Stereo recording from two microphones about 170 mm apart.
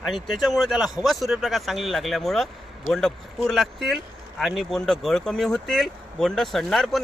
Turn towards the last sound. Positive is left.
turn(degrees=0)  # may be behind; listen again after turning